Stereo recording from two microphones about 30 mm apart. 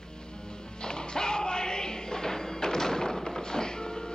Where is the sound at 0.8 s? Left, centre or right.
Left.